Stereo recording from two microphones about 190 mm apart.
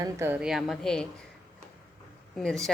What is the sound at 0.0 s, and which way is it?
Speech, 15° right (ahead or behind).